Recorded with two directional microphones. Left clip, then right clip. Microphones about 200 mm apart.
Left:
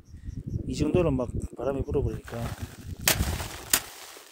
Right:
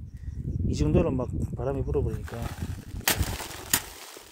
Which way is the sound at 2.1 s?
5° left (ahead or behind).